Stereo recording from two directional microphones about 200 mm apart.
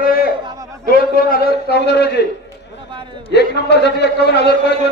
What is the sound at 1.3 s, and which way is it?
Speech, 55° left (ahead or behind).